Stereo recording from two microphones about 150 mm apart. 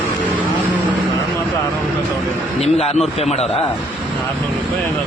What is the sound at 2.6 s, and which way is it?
Speech, 45° left (ahead or behind).